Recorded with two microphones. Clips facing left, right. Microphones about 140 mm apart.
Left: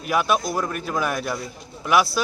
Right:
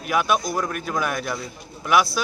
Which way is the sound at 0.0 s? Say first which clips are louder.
Even; 5° left (ahead or behind).